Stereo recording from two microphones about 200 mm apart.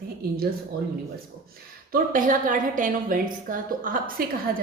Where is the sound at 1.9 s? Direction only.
40° right (ahead or behind).